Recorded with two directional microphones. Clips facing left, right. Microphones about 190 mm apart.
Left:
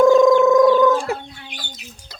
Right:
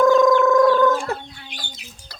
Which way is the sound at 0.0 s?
25° left (ahead or behind).